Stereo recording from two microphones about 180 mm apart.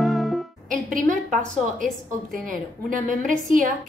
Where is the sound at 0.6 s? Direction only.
45° right (ahead or behind).